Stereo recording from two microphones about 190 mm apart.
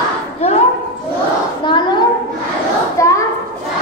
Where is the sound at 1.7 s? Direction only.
25° left (ahead or behind).